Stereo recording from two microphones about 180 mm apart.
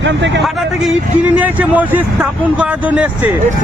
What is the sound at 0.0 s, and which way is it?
Speech, 90° right.